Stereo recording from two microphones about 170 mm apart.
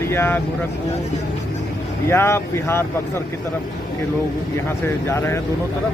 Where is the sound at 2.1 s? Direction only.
15° left (ahead or behind).